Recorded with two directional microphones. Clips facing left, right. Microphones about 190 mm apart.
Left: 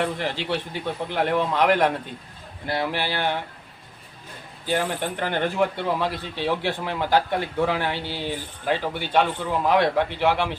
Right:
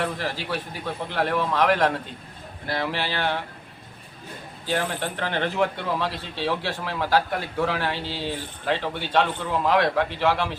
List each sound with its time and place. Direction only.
0.0 s a man's voice: 20° left (ahead or behind)
4.6 s speech: 15° left (ahead or behind)